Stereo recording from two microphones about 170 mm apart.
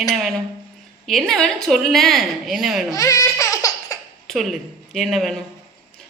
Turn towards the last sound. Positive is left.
turn(degrees=0)  # may be behind; listen again after turning